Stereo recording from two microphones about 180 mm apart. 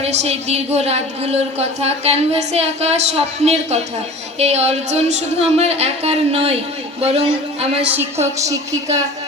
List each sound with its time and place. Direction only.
0.0 s a woman's voice: 35° right (ahead or behind)
7.9 s a woman's voice: 15° right (ahead or behind)